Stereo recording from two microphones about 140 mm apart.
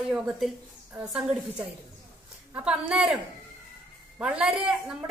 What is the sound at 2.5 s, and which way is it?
A woman's voice, 5° right (ahead or behind).